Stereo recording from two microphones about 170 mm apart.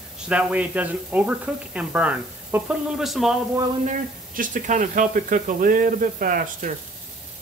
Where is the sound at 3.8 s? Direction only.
50° right (ahead or behind).